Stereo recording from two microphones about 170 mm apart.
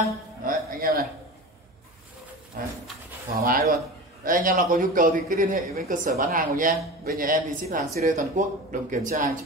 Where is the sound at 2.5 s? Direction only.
55° right (ahead or behind).